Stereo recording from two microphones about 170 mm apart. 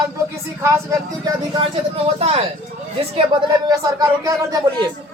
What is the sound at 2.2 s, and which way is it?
A man's voice, 35° right (ahead or behind).